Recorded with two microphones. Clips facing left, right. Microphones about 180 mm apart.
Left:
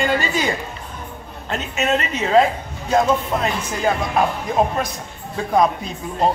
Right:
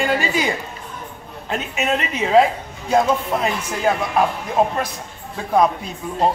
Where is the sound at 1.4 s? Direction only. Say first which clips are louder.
Left 1 dB; 10° right (ahead or behind).